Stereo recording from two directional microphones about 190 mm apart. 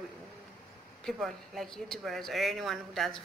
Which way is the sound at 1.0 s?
Centre (ahead or behind).